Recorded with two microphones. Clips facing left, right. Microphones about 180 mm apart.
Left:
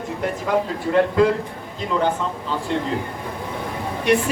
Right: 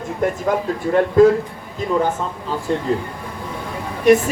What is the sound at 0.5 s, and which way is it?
Speech, 45° right (ahead or behind).